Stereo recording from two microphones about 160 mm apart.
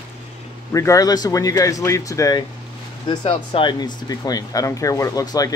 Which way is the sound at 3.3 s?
35° left (ahead or behind).